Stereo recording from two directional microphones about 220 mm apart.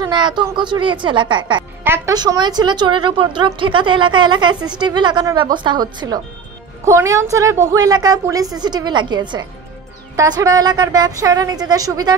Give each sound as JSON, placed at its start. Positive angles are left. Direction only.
{"t": 0.0, "sound": "a woman's voice", "side_deg": -20}